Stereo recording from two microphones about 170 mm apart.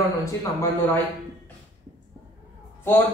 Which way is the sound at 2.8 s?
15° left (ahead or behind).